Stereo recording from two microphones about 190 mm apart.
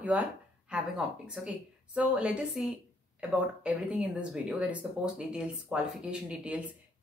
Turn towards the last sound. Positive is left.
turn(degrees=-5)  # may be behind; listen again after turning